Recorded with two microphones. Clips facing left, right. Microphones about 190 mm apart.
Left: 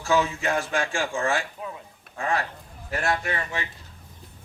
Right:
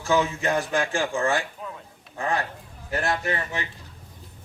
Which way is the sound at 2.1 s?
20° right (ahead or behind).